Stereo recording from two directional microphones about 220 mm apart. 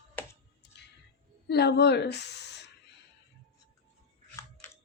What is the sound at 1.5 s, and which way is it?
Speech, 45° left (ahead or behind).